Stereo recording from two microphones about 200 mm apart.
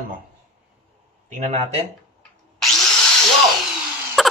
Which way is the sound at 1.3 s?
35° right (ahead or behind).